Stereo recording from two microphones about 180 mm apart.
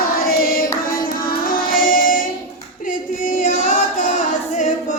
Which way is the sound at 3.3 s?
50° left (ahead or behind).